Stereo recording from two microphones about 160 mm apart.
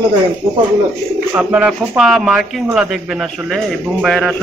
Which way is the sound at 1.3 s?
10° right (ahead or behind).